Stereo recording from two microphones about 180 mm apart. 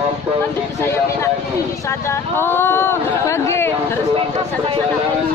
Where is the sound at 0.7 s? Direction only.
15° left (ahead or behind).